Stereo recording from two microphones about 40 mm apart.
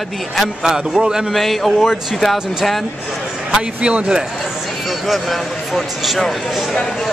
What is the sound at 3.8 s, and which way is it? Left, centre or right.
Speech, right.